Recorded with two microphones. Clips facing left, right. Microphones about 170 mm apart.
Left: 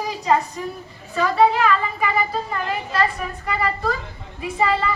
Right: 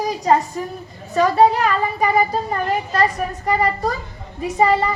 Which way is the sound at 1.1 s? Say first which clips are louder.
Right 3 dB; 40° right (ahead or behind).